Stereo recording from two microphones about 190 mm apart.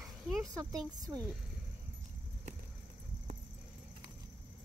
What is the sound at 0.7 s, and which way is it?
Speech, 15° right (ahead or behind).